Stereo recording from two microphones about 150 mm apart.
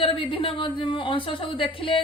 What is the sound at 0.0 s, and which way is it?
A woman's voice, 35° left (ahead or behind).